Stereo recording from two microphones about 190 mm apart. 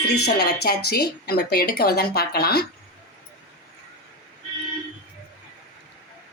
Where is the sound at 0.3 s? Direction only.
55° left (ahead or behind).